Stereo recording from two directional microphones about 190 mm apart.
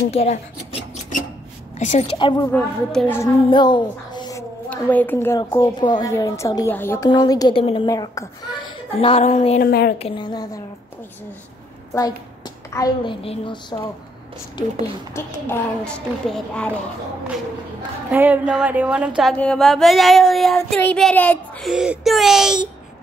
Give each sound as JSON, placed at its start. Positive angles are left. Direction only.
{"t": 0.1, "sound": "a sound", "side_deg": 35}
{"t": 1.8, "sound": "a woman's voice", "side_deg": 35}
{"t": 2.5, "sound": "child singing", "side_deg": 5}
{"t": 3.4, "sound": "a woman's voice", "side_deg": 25}
{"t": 9.0, "sound": "a sound", "side_deg": 35}
{"t": 9.6, "sound": "speech", "side_deg": 60}
{"t": 9.9, "sound": "a woman's voice", "side_deg": 30}
{"t": 11.9, "sound": "a woman's voice", "side_deg": 20}
{"t": 15.1, "sound": "child singing", "side_deg": 10}
{"t": 18.1, "sound": "a woman's voice", "side_deg": -10}
{"t": 19.3, "sound": "child singing", "side_deg": 5}